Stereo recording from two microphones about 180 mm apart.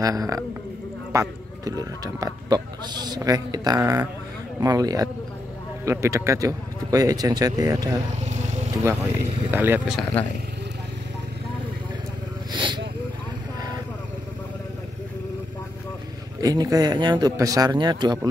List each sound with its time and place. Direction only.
0.0 s speech: 20° right (ahead or behind)
8.2 s vehicle: 40° right (ahead or behind)
8.7 s speech: 15° right (ahead or behind)
12.5 s a sound: 25° right (ahead or behind)
16.3 s speech: 20° right (ahead or behind)